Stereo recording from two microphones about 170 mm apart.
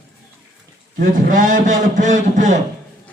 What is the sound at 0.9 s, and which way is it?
Speech, 55° right (ahead or behind).